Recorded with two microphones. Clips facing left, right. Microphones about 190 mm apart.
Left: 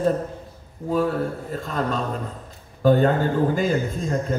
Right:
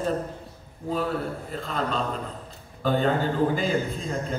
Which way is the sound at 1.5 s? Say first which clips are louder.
Left 3 dB; 45° left (ahead or behind).